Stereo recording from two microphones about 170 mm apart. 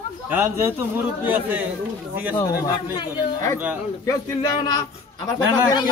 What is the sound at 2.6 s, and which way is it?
A man's voice, 20° left (ahead or behind).